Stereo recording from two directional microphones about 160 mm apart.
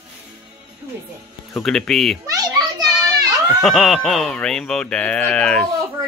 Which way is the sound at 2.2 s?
25° right (ahead or behind).